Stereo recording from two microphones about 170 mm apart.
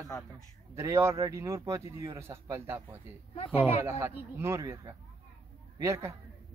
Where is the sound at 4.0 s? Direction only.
15° right (ahead or behind).